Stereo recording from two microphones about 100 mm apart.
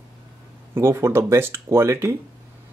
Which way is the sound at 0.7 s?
30° right (ahead or behind).